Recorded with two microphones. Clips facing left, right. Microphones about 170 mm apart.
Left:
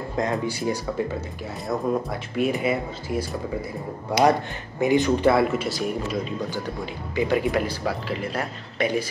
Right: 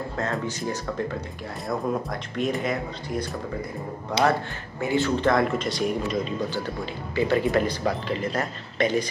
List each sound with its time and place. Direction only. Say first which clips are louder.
0.1 s speech: left 7 dB; 15° left (ahead or behind)
7.2 s speech: even; 15° left (ahead or behind)